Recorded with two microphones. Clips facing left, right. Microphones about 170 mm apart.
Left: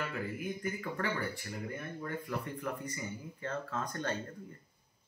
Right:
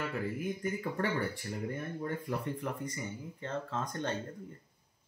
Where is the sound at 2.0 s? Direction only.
25° right (ahead or behind).